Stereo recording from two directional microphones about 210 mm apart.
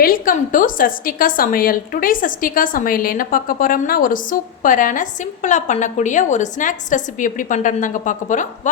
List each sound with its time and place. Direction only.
0.0 s a woman's voice: 40° left (ahead or behind)